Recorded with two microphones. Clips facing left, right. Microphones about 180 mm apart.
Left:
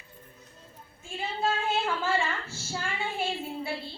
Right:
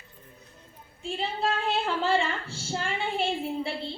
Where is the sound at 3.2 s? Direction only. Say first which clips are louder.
Right 5 dB; 30° right (ahead or behind).